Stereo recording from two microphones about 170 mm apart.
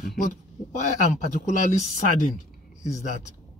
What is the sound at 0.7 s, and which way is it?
Speech, 45° left (ahead or behind).